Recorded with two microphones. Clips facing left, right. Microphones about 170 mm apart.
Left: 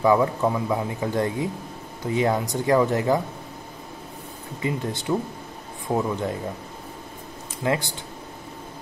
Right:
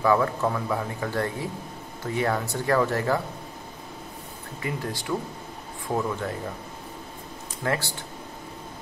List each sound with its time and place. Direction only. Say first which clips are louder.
0.0 s speech: left 3 dB; 20° left (ahead or behind)
4.6 s speech: left 4 dB; 20° left (ahead or behind)
7.6 s speech: left 3 dB; 20° left (ahead or behind)